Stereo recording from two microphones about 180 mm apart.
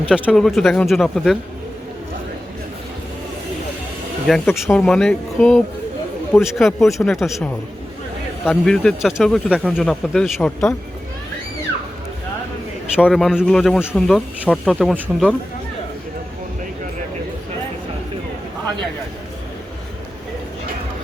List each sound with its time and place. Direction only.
0.1 s speech: centre (ahead or behind)
4.3 s speech: centre (ahead or behind)
13.0 s speech: centre (ahead or behind)